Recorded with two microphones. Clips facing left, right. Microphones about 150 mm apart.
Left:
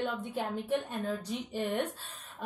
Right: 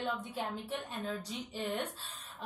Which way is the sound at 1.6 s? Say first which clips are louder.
Left 4 dB; 60° left (ahead or behind).